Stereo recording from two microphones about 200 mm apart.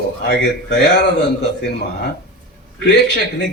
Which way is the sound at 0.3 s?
55° left (ahead or behind).